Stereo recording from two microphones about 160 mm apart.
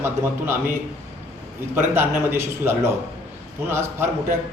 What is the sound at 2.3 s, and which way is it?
A man's voice, 15° right (ahead or behind).